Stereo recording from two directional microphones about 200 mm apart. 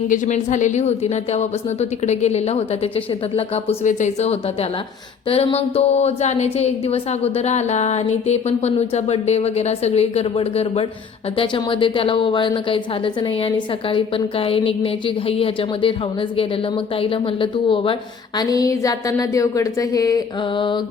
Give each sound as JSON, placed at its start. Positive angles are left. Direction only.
{"t": 0.1, "sound": "a woman's voice", "side_deg": 35}